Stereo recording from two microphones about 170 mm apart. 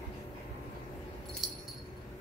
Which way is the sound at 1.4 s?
Centre (ahead or behind).